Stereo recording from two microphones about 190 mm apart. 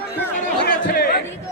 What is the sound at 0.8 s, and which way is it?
Speech, 55° left (ahead or behind).